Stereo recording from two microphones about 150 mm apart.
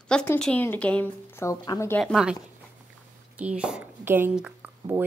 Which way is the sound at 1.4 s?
25° left (ahead or behind).